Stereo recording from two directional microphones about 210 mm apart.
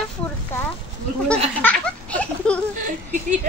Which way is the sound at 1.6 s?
5° left (ahead or behind).